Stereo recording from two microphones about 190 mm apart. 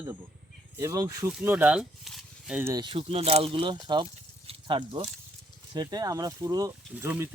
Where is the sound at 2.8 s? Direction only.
30° right (ahead or behind).